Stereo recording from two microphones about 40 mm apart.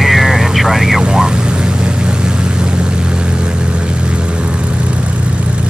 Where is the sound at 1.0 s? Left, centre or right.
Centre.